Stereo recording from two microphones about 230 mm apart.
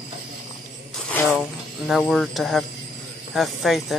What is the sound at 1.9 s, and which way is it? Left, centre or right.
Speech, centre.